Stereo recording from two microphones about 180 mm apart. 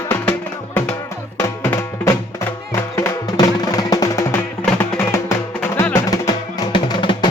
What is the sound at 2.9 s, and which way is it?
Music, 20° left (ahead or behind).